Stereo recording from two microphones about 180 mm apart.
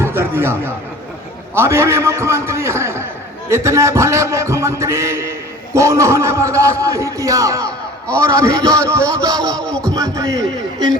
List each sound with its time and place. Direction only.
0.0 s a sound: 15° right (ahead or behind)
1.5 s music: 15° right (ahead or behind)
9.2 s a man's voice: 20° right (ahead or behind)
9.6 s music: 5° left (ahead or behind)
9.9 s a man's voice: 20° right (ahead or behind)